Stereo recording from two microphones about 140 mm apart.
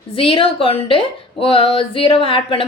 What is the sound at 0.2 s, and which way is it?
Speech, 40° left (ahead or behind).